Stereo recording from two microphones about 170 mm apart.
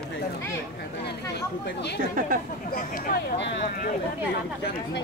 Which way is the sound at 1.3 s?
80° left.